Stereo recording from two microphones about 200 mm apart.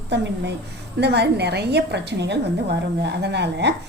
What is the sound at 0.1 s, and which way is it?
A woman's voice, 60° right (ahead or behind).